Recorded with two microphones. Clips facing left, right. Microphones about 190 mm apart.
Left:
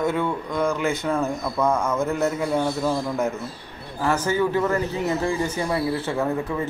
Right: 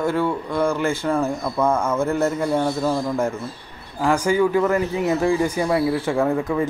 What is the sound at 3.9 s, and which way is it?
A man's voice, 15° right (ahead or behind).